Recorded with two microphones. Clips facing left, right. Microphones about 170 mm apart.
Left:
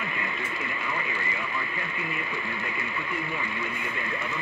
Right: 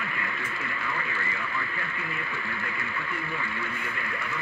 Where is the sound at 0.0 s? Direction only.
20° left (ahead or behind).